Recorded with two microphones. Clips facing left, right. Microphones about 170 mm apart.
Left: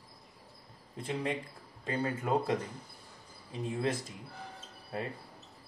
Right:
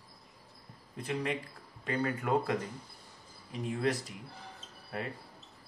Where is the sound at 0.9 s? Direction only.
25° left (ahead or behind).